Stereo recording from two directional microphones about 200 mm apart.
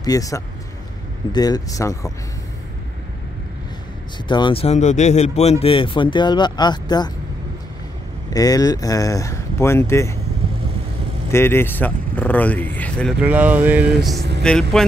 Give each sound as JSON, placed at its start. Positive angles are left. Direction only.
{"t": 0.0, "sound": "speech", "side_deg": 15}
{"t": 4.3, "sound": "speech", "side_deg": 25}
{"t": 8.3, "sound": "speech", "side_deg": 20}
{"t": 11.3, "sound": "speech", "side_deg": 10}
{"t": 13.2, "sound": "speech", "side_deg": -5}
{"t": 14.1, "sound": "speech", "side_deg": -55}
{"t": 14.4, "sound": "speech", "side_deg": 5}